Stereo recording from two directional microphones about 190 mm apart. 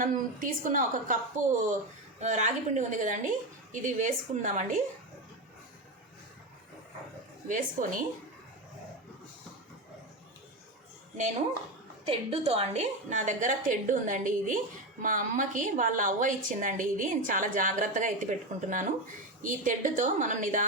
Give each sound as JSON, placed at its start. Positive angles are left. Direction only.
{"t": 0.0, "sound": "a woman's voice", "side_deg": -45}
{"t": 7.4, "sound": "a woman's voice", "side_deg": -45}
{"t": 12.5, "sound": "a woman's voice", "side_deg": -35}